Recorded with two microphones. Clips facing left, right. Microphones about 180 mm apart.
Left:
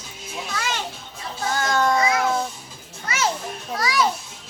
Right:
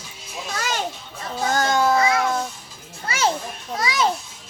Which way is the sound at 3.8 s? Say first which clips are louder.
Left 1 dB; 20° right (ahead or behind).